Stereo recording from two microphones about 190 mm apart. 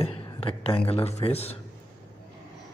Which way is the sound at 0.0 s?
30° left (ahead or behind).